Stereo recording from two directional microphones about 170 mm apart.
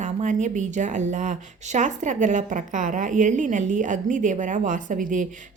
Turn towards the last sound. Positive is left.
turn(degrees=-50)  # may be behind; listen again after turning